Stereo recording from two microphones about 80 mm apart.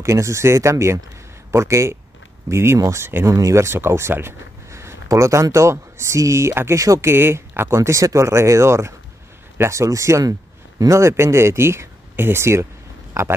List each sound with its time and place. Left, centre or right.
0.0 s speech: right